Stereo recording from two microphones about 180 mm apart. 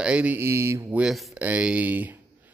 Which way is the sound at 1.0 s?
Centre (ahead or behind).